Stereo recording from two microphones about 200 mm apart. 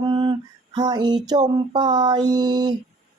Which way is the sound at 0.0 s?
25° right (ahead or behind).